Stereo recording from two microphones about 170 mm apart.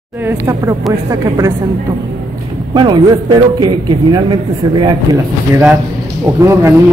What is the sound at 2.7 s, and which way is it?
Speech, 25° right (ahead or behind).